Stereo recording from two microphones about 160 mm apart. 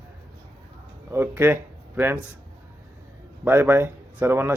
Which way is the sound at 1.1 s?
15° right (ahead or behind).